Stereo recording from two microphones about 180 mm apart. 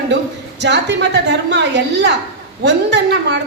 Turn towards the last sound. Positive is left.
turn(degrees=-70)  # may be behind; listen again after turning